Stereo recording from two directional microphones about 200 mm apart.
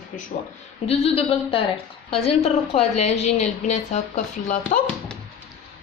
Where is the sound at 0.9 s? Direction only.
30° left (ahead or behind).